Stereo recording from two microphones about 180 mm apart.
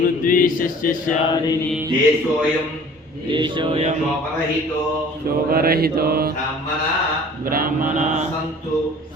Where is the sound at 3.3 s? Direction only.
25° right (ahead or behind).